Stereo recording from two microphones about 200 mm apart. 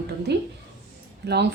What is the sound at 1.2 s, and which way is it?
Speech, 55° right (ahead or behind).